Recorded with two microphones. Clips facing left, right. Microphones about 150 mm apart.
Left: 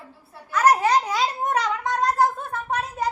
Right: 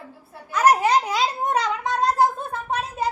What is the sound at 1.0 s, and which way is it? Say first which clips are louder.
Babbling: right 1 dB; 20° right (ahead or behind).